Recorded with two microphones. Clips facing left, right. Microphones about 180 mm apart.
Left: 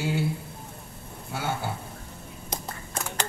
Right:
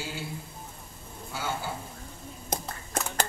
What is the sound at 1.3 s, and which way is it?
Speech, 60° left (ahead or behind).